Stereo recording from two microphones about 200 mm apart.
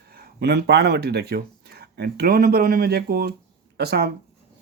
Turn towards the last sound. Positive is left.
turn(degrees=-55)  # may be behind; listen again after turning